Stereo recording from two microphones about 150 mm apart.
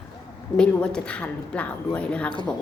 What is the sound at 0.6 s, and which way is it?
Speech, 5° left (ahead or behind).